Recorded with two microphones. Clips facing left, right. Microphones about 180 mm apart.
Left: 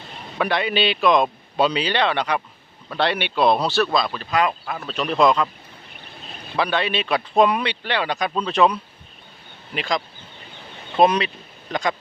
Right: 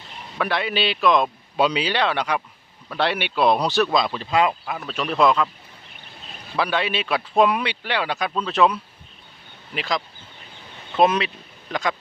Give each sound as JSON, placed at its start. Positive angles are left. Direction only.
{"t": 0.3, "sound": "a man's voice", "side_deg": 0}
{"t": 4.6, "sound": "a man's voice", "side_deg": -5}
{"t": 6.6, "sound": "a man's voice", "side_deg": -10}